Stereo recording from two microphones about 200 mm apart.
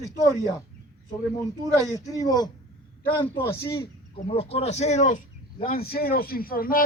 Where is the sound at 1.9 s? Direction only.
15° left (ahead or behind).